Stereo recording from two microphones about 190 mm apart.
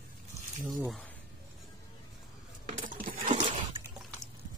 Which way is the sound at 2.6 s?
40° right (ahead or behind).